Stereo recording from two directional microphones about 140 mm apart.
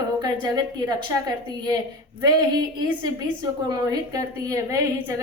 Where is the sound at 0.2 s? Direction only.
30° right (ahead or behind).